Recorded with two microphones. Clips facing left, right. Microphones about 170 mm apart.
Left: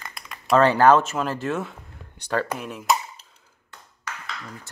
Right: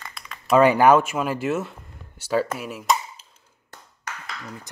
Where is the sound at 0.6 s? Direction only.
10° right (ahead or behind).